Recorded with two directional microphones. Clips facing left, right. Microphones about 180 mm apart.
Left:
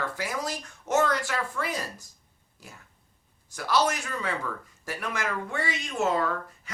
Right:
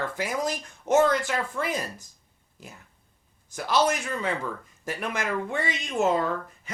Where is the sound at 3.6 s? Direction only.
20° right (ahead or behind).